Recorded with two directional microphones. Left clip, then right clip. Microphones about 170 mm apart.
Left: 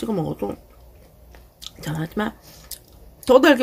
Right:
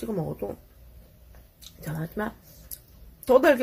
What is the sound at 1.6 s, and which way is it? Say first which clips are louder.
Speech: left 7 dB; 20° left (ahead or behind).